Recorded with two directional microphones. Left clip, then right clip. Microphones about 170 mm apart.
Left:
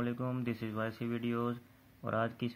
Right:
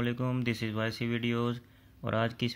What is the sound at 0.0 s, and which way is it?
Speech, 30° right (ahead or behind).